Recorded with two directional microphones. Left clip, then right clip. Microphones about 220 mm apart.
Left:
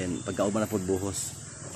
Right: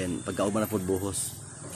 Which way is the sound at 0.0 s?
Centre (ahead or behind).